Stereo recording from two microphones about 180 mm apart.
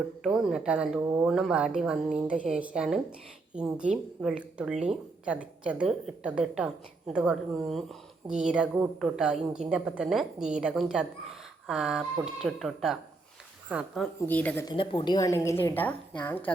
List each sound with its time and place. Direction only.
0.2 s a woman's voice: 5° right (ahead or behind)
1.0 s speech: 15° right (ahead or behind)
1.3 s a woman's voice: centre (ahead or behind)
14.2 s a woman's voice: 10° left (ahead or behind)
14.6 s a woman's voice: 25° left (ahead or behind); by 16.4 s 10° left (ahead or behind)